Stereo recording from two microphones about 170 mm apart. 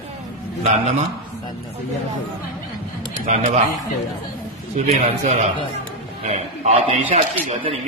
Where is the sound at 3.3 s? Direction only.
40° right (ahead or behind).